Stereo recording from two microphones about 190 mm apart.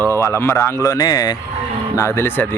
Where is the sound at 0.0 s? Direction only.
15° left (ahead or behind).